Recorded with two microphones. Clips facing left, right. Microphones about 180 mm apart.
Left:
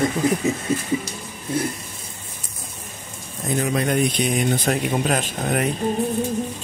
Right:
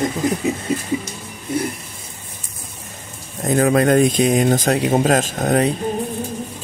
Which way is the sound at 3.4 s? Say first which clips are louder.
Right 7 dB; 50° right (ahead or behind).